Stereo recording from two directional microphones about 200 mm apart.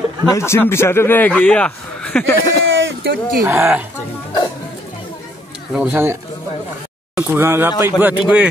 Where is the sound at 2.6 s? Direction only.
70° right (ahead or behind).